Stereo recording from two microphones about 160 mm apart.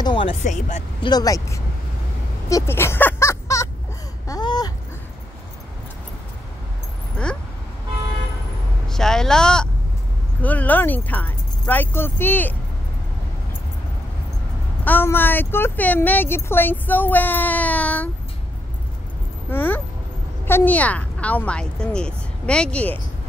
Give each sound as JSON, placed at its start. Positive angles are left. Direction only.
{"t": 0.0, "sound": "speech", "side_deg": 30}
{"t": 0.4, "sound": "speech", "side_deg": 50}
{"t": 1.0, "sound": "speech", "side_deg": 25}
{"t": 2.5, "sound": "a sound", "side_deg": 15}
{"t": 8.8, "sound": "speech", "side_deg": 5}
{"t": 14.9, "sound": "speech", "side_deg": 10}
{"t": 19.5, "sound": "a sound", "side_deg": 15}
{"t": 20.4, "sound": "speech", "side_deg": 10}